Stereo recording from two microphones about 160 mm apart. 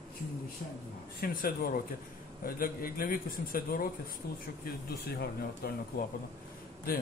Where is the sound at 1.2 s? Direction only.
65° left (ahead or behind).